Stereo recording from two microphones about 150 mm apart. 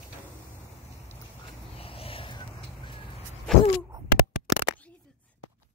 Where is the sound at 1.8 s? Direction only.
40° left (ahead or behind).